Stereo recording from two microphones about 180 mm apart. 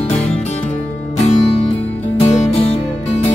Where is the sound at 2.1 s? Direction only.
35° left (ahead or behind).